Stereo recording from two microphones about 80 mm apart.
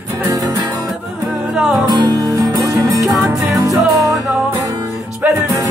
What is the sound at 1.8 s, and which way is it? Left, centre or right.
Music, right.